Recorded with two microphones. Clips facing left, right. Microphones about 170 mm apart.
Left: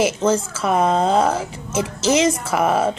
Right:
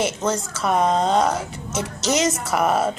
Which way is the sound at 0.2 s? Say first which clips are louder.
Left 5 dB; 30° left (ahead or behind).